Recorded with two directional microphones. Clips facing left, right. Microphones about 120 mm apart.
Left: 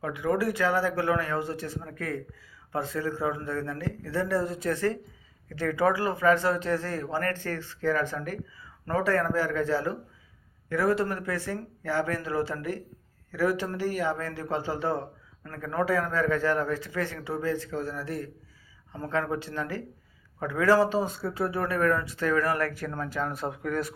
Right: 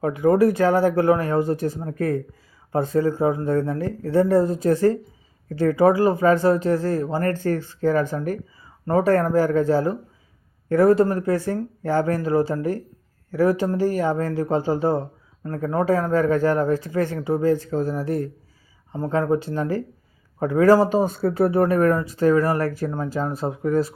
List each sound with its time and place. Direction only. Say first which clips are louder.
0.0 s speech: right 10 dB; 40° right (ahead or behind); by 21.5 s 60° right (ahead or behind)
21.6 s speech: right 5 dB; 40° right (ahead or behind)